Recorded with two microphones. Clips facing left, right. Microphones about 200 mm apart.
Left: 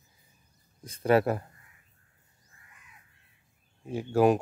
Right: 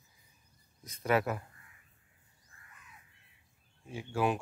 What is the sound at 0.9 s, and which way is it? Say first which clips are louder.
Speech: left 7 dB; 30° left (ahead or behind).